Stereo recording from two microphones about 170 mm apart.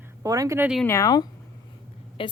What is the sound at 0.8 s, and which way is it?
Speech, 20° left (ahead or behind).